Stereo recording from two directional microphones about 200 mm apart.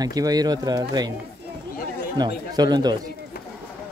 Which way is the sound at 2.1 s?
20° right (ahead or behind).